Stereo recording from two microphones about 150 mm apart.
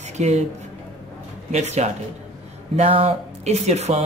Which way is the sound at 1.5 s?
50° right (ahead or behind).